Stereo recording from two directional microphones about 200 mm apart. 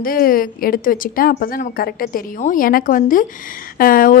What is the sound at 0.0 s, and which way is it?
A woman's voice, 45° left (ahead or behind).